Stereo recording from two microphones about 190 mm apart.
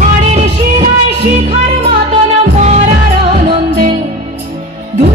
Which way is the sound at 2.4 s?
40° right (ahead or behind).